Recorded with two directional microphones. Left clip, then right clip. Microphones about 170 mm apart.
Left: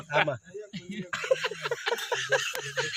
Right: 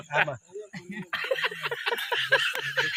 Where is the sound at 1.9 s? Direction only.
50° left (ahead or behind).